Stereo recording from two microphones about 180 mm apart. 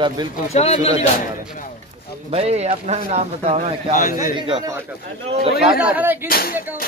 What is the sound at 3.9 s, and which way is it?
Speech, 45° left (ahead or behind).